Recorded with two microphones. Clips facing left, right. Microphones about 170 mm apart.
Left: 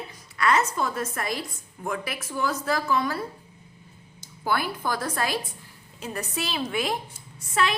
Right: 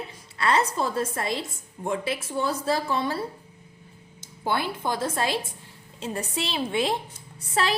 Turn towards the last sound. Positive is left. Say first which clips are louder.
# even
turn(degrees=-35)  # may be behind; listen again after turning